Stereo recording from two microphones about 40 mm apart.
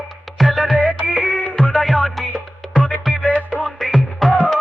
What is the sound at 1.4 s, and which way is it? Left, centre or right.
Music, left.